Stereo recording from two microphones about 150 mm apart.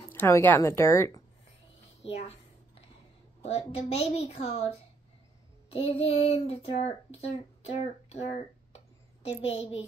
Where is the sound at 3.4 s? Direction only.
40° left (ahead or behind).